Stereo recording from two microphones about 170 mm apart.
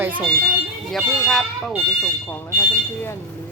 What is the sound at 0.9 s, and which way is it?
Speech, centre (ahead or behind).